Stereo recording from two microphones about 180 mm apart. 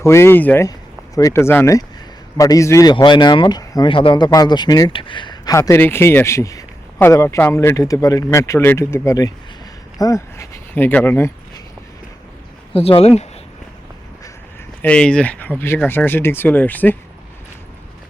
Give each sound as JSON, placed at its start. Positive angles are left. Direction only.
{"t": 0.0, "sound": "speech", "side_deg": 15}
{"t": 13.0, "sound": "speech", "side_deg": 35}
{"t": 14.8, "sound": "speech", "side_deg": 5}